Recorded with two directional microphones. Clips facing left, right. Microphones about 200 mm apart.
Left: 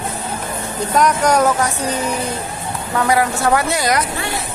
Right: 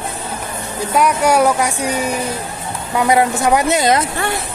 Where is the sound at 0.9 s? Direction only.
10° right (ahead or behind); by 4.1 s 25° right (ahead or behind).